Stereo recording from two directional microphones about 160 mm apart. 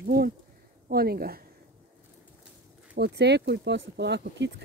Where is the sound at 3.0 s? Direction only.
90° right.